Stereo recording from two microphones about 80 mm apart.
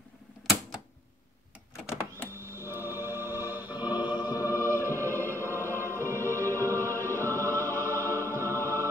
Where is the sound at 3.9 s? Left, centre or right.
Left.